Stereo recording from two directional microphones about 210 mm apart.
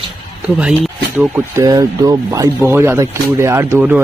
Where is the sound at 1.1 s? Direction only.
10° right (ahead or behind).